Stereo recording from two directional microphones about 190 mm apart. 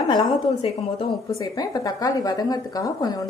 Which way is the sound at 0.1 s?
20° left (ahead or behind).